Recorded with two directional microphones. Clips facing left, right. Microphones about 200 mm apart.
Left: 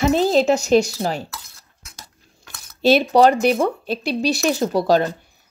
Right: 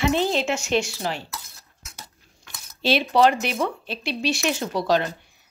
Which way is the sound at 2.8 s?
45° left (ahead or behind).